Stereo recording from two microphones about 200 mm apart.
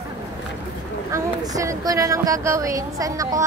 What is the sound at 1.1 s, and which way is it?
A woman's voice, 15° right (ahead or behind).